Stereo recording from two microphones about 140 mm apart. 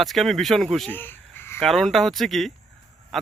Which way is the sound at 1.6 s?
Centre (ahead or behind).